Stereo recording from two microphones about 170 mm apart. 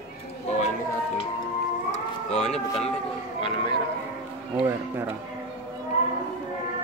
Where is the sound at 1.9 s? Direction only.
40° left (ahead or behind).